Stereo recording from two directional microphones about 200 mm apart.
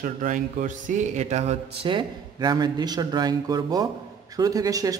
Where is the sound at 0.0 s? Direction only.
40° right (ahead or behind).